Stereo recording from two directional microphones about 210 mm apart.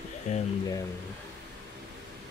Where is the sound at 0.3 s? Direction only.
35° left (ahead or behind).